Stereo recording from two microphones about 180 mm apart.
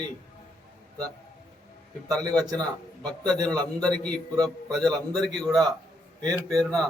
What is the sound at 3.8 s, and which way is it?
Speech, 5° left (ahead or behind).